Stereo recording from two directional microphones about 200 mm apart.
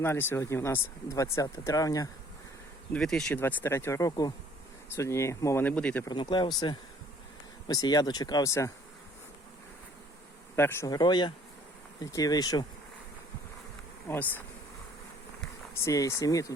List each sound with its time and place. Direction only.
0.0 s speech: 10° left (ahead or behind)
2.9 s speech: 5° left (ahead or behind)
6.1 s speech: 20° left (ahead or behind)
10.5 s speech: 10° left (ahead or behind)
14.1 s speech: 10° left (ahead or behind)
15.8 s speech: 15° left (ahead or behind)